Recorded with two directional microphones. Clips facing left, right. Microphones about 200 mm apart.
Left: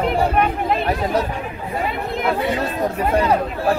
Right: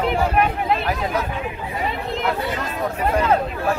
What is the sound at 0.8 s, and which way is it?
Speech, 30° left (ahead or behind).